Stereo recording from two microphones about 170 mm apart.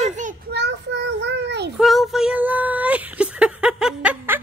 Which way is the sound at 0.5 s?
90° right.